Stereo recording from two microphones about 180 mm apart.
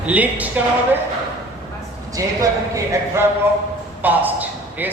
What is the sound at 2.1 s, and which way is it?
Speech, 20° right (ahead or behind).